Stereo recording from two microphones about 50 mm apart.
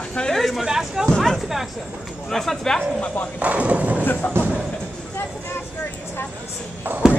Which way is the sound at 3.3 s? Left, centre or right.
Right.